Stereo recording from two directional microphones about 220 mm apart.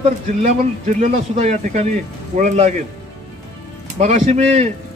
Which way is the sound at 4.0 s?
30° right (ahead or behind).